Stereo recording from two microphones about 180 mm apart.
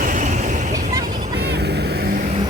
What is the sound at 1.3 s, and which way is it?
Vehicle, 65° right (ahead or behind).